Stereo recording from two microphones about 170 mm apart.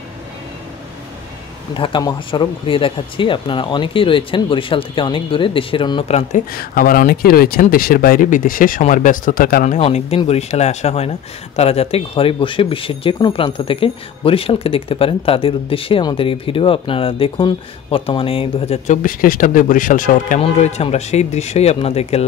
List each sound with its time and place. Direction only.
1.7 s speech: 30° left (ahead or behind)
6.5 s speech: 60° left (ahead or behind)
9.8 s speech: 35° left (ahead or behind)
19.0 s speech: 55° left (ahead or behind)
20.3 s speech: 40° left (ahead or behind)